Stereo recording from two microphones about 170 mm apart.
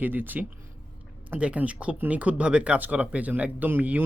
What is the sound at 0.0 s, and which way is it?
Speech, 10° right (ahead or behind).